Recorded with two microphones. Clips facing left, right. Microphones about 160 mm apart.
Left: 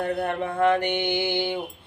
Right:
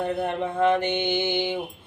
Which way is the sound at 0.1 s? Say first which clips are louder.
Even; 20° right (ahead or behind).